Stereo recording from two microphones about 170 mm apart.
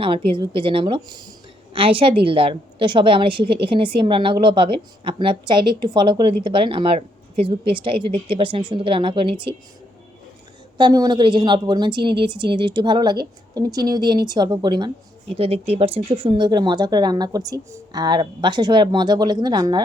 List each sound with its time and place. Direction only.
0.0 s a woman's voice: 30° right (ahead or behind)
10.8 s a woman's voice: 25° right (ahead or behind)
15.4 s a woman's voice: 35° right (ahead or behind)